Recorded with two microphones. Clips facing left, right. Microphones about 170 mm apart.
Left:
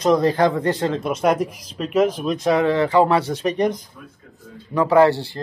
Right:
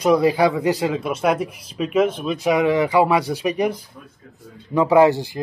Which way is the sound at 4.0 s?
35° right (ahead or behind).